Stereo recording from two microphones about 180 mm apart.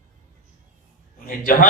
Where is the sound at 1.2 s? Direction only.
50° left (ahead or behind).